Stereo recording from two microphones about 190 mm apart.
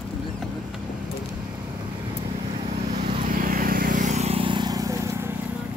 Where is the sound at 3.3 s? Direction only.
45° right (ahead or behind); by 5.3 s 20° right (ahead or behind).